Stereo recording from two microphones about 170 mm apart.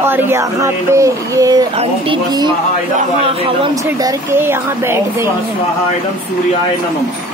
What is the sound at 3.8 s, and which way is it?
Speech, 20° right (ahead or behind).